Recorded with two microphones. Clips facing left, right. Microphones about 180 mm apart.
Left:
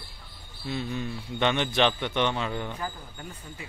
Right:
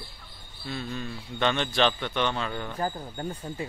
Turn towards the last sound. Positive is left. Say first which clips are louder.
# right 8 dB
turn(degrees=-40)  # may be behind; listen again after turning